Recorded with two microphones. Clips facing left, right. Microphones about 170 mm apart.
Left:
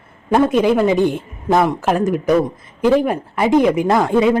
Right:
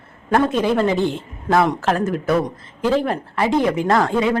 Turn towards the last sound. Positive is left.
turn(degrees=20)  # may be behind; listen again after turning